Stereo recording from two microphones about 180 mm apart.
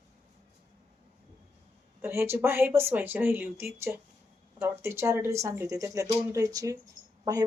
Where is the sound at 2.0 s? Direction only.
15° right (ahead or behind).